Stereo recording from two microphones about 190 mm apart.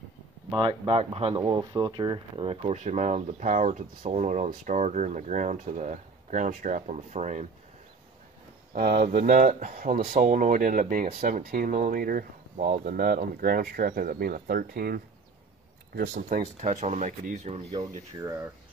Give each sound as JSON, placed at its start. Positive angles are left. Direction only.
{"t": 0.5, "sound": "speech", "side_deg": -25}
{"t": 1.4, "sound": "speech", "side_deg": -20}
{"t": 8.7, "sound": "speech", "side_deg": -45}
{"t": 17.7, "sound": "speech", "side_deg": -15}